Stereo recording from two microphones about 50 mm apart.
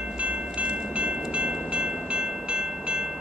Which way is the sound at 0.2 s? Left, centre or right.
Right.